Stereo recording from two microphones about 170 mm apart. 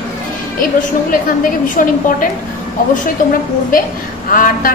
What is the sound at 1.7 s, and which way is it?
Speech, 50° left (ahead or behind).